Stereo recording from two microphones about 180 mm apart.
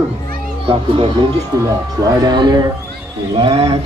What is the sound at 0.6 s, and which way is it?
Speech, 30° right (ahead or behind).